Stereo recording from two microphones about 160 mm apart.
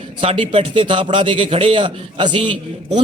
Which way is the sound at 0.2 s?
35° right (ahead or behind).